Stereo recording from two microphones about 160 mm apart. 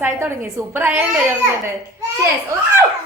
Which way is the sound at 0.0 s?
15° right (ahead or behind).